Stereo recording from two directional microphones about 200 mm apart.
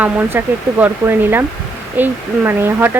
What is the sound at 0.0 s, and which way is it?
Speech, 10° right (ahead or behind).